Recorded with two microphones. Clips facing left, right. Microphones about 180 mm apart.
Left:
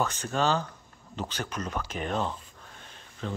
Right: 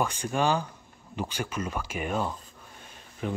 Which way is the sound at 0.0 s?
10° right (ahead or behind).